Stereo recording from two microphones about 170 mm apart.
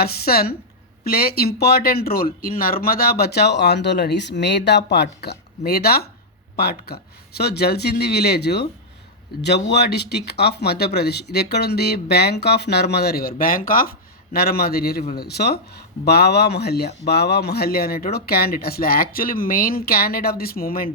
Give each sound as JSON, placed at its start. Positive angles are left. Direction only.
{"t": 0.0, "sound": "speech", "side_deg": 65}
{"t": 14.3, "sound": "speech", "side_deg": 65}